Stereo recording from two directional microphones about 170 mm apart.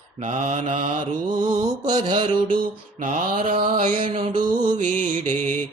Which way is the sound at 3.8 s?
30° right (ahead or behind).